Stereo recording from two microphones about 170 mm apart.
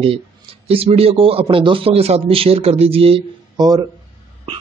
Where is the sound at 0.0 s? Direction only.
35° right (ahead or behind).